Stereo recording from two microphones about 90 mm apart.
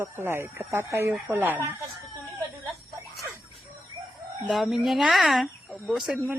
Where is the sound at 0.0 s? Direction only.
25° right (ahead or behind).